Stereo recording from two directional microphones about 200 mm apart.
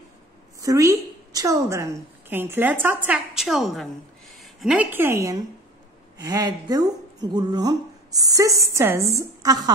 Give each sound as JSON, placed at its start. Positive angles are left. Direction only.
{"t": 0.6, "sound": "a woman's voice", "side_deg": -15}